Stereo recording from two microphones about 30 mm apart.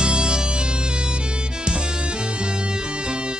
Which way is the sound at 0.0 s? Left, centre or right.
Right.